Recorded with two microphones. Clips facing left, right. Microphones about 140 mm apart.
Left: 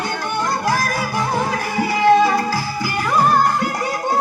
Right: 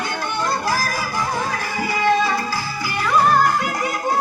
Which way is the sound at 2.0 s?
55° left (ahead or behind).